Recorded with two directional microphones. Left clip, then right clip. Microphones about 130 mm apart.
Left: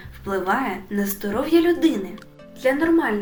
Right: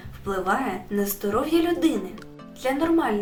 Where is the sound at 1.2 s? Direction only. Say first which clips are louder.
Left 4 dB; 30° right (ahead or behind).